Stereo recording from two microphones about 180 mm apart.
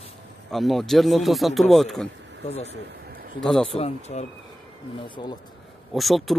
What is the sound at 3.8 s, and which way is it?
Speech, 40° left (ahead or behind).